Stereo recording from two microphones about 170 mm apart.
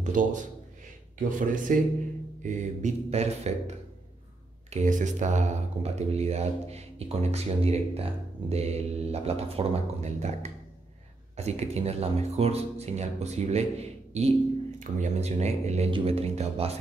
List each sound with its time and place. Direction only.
0.0 s a man's voice: 50° right (ahead or behind)
1.7 s a man's voice: 50° right (ahead or behind)
2.4 s speech: 40° right (ahead or behind)